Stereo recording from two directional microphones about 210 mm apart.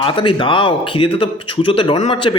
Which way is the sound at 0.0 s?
25° left (ahead or behind).